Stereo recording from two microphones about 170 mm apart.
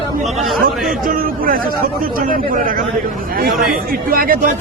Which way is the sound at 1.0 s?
55° right (ahead or behind).